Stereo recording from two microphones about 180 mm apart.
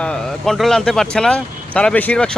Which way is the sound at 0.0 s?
5° left (ahead or behind).